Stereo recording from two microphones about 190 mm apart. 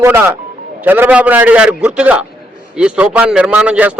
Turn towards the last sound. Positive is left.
turn(degrees=-5)  # may be behind; listen again after turning